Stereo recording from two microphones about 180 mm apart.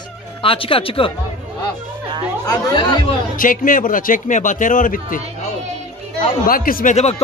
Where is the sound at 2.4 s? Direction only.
25° left (ahead or behind).